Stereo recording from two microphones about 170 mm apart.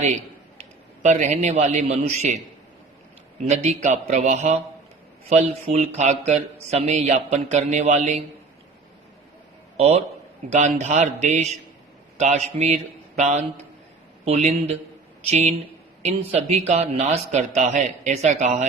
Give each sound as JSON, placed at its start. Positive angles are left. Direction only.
{"t": 1.0, "sound": "a man's voice", "side_deg": -40}
{"t": 3.5, "sound": "a man's voice", "side_deg": -45}
{"t": 10.5, "sound": "a man's voice", "side_deg": -45}